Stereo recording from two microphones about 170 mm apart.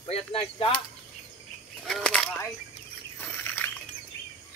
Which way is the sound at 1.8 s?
5° left (ahead or behind).